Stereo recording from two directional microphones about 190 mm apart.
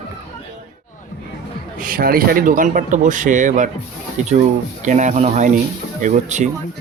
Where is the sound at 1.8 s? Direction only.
50° right (ahead or behind).